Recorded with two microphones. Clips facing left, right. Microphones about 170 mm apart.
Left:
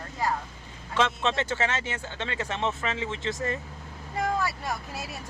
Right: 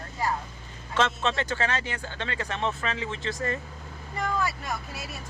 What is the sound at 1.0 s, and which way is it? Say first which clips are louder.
Speech: even; 15° left (ahead or behind).